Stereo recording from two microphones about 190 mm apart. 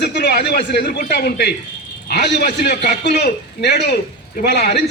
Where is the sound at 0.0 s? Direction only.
60° left (ahead or behind).